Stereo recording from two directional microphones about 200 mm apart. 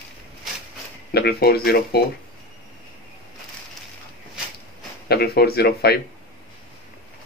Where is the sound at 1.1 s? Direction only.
50° left (ahead or behind).